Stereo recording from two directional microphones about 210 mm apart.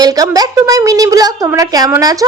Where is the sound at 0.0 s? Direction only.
15° right (ahead or behind).